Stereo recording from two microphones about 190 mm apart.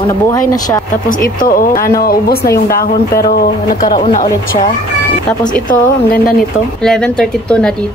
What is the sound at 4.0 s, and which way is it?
Speech, 45° left (ahead or behind).